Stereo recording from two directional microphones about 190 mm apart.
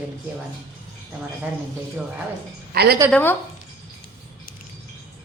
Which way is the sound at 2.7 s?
55° right (ahead or behind).